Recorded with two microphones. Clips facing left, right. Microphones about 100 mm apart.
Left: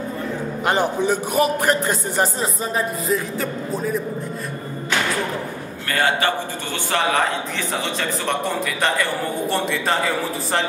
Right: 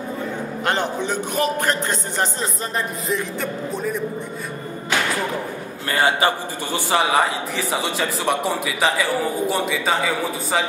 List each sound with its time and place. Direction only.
0.7 s a man's voice: 10° left (ahead or behind)
5.9 s a man's voice: 20° right (ahead or behind); by 10.6 s centre (ahead or behind)